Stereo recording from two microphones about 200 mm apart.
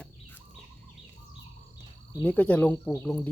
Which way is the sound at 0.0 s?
10° left (ahead or behind).